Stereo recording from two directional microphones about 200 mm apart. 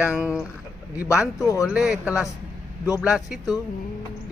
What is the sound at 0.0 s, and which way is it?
Speech, 5° right (ahead or behind).